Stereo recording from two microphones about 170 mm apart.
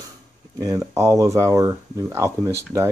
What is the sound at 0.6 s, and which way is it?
Speech, 20° right (ahead or behind).